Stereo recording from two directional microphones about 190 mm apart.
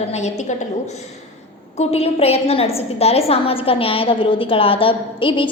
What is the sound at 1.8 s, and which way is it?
A woman's voice, 35° left (ahead or behind).